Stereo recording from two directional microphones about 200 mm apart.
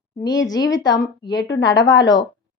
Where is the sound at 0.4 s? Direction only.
20° left (ahead or behind).